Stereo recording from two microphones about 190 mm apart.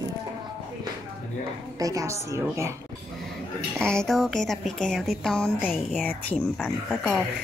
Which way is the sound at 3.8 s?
5° left (ahead or behind).